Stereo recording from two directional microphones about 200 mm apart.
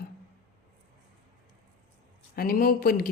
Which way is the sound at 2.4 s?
45° left (ahead or behind).